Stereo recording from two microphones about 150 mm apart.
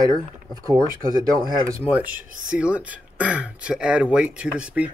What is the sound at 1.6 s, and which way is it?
Speech, 10° right (ahead or behind).